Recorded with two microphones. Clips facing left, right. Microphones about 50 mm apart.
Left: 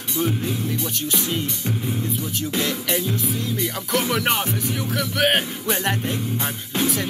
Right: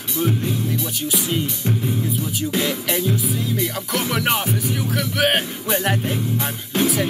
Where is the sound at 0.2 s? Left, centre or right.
Centre.